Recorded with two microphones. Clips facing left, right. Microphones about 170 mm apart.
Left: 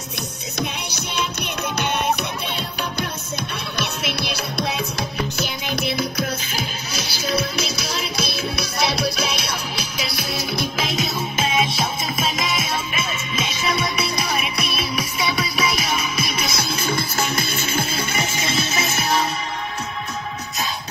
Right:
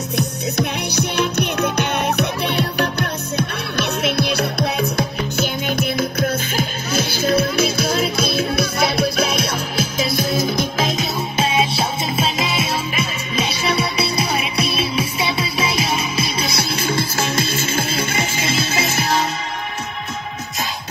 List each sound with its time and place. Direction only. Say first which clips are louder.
0.6 s music: right 5 dB; 60° right (ahead or behind); by 17.0 s 30° right (ahead or behind)